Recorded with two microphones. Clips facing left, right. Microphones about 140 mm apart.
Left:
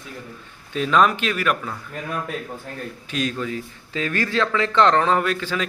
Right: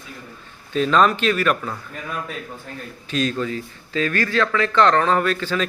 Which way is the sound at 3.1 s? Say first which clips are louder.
Right 3 dB; 10° left (ahead or behind).